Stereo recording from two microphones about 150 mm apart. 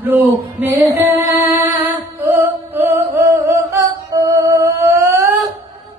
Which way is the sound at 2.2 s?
15° right (ahead or behind).